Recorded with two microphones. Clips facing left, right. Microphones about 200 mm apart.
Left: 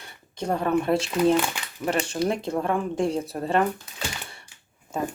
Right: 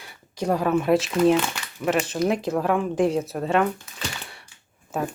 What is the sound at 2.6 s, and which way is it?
Speech, 5° right (ahead or behind).